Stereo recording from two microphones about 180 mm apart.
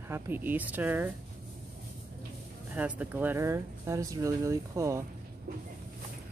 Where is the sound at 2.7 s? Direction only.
10° right (ahead or behind).